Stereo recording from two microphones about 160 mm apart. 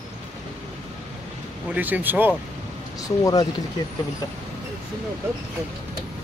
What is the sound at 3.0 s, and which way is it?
Speech, 20° left (ahead or behind).